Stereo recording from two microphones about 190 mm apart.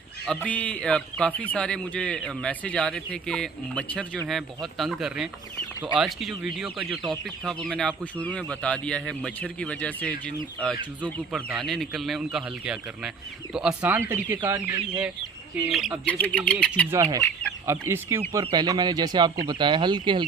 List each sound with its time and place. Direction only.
0.3 s speech: 10° left (ahead or behind)
6.9 s speech: 25° right (ahead or behind)
7.3 s speech: centre (ahead or behind)
11.3 s speech: 10° right (ahead or behind)
16.9 s speech: 15° right (ahead or behind)